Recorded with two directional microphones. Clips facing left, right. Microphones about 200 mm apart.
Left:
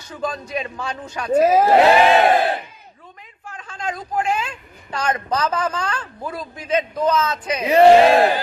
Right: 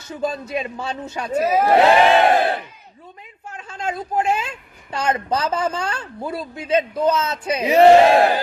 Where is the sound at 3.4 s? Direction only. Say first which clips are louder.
Right 1 dB; 25° right (ahead or behind).